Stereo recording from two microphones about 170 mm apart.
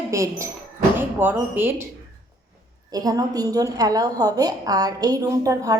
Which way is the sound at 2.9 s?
20° right (ahead or behind).